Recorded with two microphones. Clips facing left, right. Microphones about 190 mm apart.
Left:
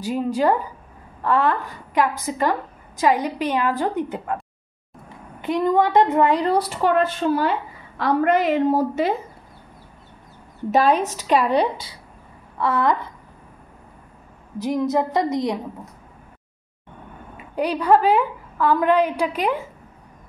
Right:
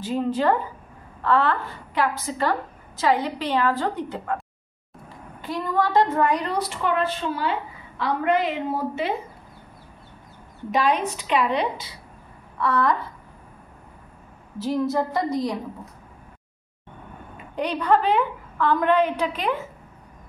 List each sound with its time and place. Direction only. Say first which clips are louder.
0.0 s a woman's voice: left 2 dB; 10° left (ahead or behind)
5.4 s a woman's voice: left 6 dB; 20° left (ahead or behind); by 9.1 s 40° left (ahead or behind)
10.7 s a woman's voice: left 4 dB; 40° left (ahead or behind)
12.5 s a woman's voice: left 2 dB; 25° left (ahead or behind)
14.6 s a woman's voice: left 2 dB; 15° left (ahead or behind)
17.6 s a woman's voice: left 4 dB; 10° left (ahead or behind)